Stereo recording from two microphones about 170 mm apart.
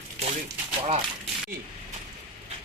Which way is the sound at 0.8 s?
40° right (ahead or behind).